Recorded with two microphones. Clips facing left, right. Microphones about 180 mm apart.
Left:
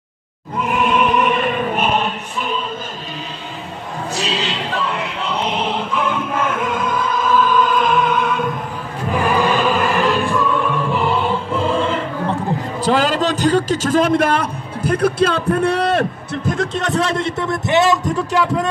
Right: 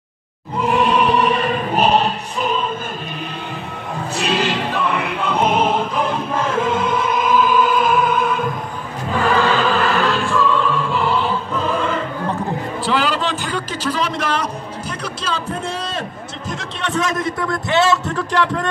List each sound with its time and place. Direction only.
0.6 s choir: 35° right (ahead or behind)
4.2 s music: 60° right (ahead or behind); by 8.5 s 5° right (ahead or behind)
9.1 s music: 15° left (ahead or behind)
12.8 s a man's voice: 45° left (ahead or behind)
16.9 s a man's voice: 30° left (ahead or behind); by 18.7 s 10° left (ahead or behind)